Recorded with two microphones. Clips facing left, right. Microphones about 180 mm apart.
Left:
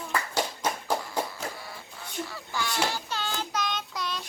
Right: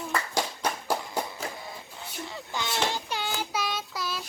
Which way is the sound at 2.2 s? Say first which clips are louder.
Even; 20° right (ahead or behind).